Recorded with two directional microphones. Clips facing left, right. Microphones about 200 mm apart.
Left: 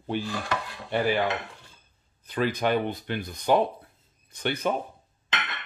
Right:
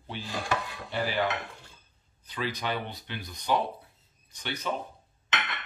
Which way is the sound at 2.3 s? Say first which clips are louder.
Left 8 dB; 50° left (ahead or behind).